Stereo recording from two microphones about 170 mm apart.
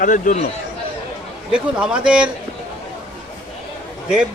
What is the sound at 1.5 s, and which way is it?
Speech, 5° right (ahead or behind).